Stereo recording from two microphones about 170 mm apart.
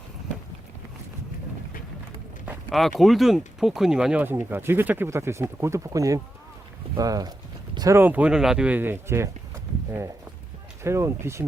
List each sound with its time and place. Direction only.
2.5 s speech: 5° right (ahead or behind)
10.8 s speech: 15° right (ahead or behind)